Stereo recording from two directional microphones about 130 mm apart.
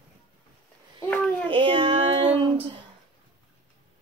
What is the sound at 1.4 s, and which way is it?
Child singing, 40° right (ahead or behind).